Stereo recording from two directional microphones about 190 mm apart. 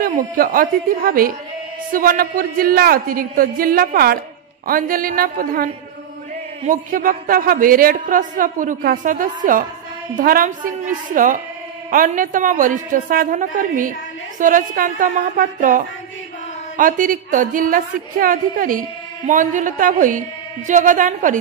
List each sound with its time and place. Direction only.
0.0 s a woman's voice: 45° right (ahead or behind)